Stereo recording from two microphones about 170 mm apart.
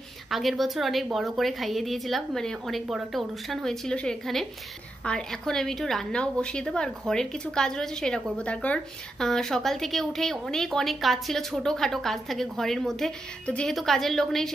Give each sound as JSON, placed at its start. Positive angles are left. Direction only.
{"t": 0.3, "sound": "a woman's voice", "side_deg": 0}